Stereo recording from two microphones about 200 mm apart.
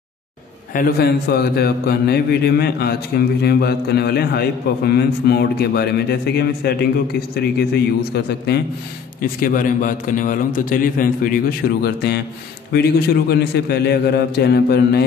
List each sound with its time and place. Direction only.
0.7 s speech: 50° left (ahead or behind)
9.2 s speech: 45° left (ahead or behind)